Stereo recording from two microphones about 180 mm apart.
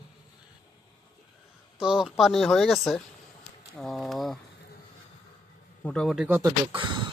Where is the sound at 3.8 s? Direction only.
Centre (ahead or behind).